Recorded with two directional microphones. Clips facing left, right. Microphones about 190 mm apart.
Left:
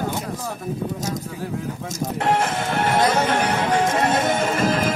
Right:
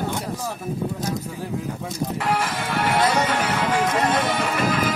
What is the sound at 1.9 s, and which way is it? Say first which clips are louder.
Speech: left 3 dB; 45° left (ahead or behind).